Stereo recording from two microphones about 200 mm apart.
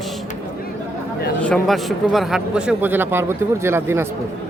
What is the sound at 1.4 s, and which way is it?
A man's voice, centre (ahead or behind).